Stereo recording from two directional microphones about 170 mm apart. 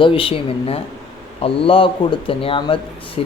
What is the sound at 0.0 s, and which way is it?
Speech, 30° left (ahead or behind).